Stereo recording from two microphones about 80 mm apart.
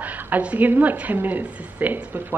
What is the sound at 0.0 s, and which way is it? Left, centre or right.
A woman's voice, centre.